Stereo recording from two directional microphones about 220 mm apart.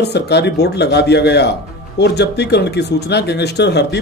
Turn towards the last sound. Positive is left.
turn(degrees=50)  # may be behind; listen again after turning